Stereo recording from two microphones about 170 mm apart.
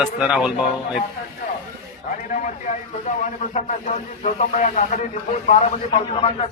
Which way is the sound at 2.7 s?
45° left (ahead or behind).